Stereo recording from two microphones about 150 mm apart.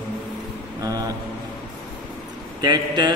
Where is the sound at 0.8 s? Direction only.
25° right (ahead or behind).